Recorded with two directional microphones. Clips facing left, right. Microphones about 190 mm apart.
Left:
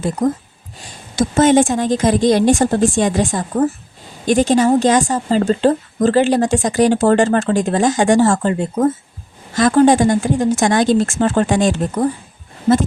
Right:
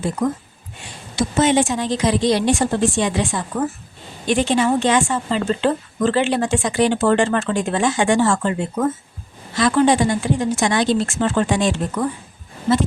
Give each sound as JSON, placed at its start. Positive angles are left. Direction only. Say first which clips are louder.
{"t": 0.8, "sound": "a woman's voice", "louder": "left 4 dB", "side_deg": 45}